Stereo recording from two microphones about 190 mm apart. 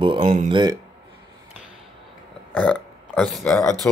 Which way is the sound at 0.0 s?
25° right (ahead or behind).